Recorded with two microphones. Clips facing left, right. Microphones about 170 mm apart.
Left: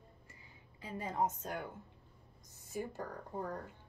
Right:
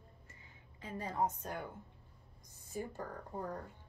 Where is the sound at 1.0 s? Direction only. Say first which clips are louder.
Left 1 dB; 20° left (ahead or behind).